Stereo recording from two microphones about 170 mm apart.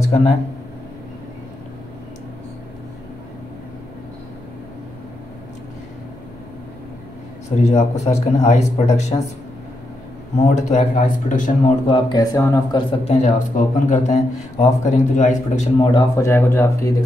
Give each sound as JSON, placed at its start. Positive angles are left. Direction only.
{"t": 0.0, "sound": "a sound", "side_deg": 40}
{"t": 7.5, "sound": "speech", "side_deg": 40}
{"t": 10.3, "sound": "speech", "side_deg": 45}
{"t": 11.9, "sound": "speech", "side_deg": 25}
{"t": 13.0, "sound": "speech", "side_deg": 40}
{"t": 16.2, "sound": "speech", "side_deg": 15}